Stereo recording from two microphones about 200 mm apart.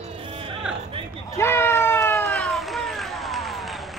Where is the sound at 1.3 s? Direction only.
10° left (ahead or behind).